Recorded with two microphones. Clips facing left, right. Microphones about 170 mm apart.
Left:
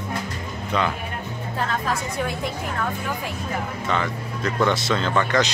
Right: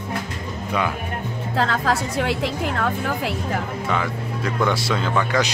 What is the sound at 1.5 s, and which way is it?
A woman's voice, 90° right.